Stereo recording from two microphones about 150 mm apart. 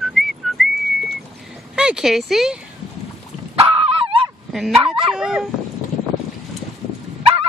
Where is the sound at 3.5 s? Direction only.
35° right (ahead or behind).